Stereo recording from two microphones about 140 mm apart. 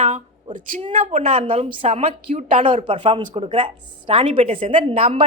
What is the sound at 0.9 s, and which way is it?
Speech, 70° right (ahead or behind).